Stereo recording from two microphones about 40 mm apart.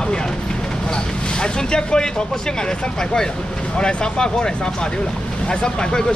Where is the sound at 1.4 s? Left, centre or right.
Left.